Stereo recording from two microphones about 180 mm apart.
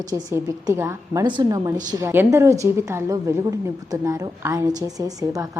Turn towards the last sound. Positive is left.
turn(degrees=-20)  # may be behind; listen again after turning